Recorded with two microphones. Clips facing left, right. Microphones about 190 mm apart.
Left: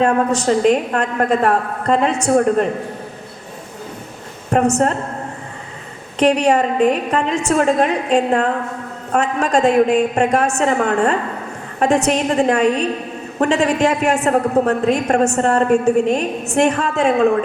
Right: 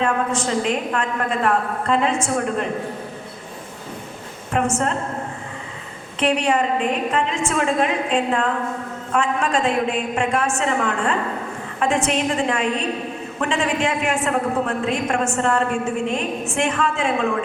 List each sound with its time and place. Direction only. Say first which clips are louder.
0.0 s a woman's voice: left 6 dB; 40° left (ahead or behind)
4.5 s a woman's voice: left 6 dB; 40° left (ahead or behind)
6.1 s a woman's voice: left 5 dB; 40° left (ahead or behind)